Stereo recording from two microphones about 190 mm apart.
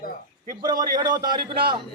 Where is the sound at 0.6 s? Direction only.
20° right (ahead or behind).